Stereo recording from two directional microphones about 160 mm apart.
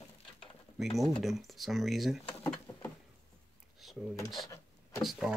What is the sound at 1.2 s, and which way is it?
Speech, centre (ahead or behind).